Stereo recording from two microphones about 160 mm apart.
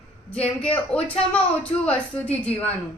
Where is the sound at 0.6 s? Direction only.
10° left (ahead or behind).